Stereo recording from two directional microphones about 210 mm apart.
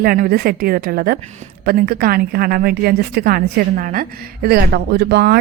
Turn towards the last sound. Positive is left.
turn(degrees=-50)  # may be behind; listen again after turning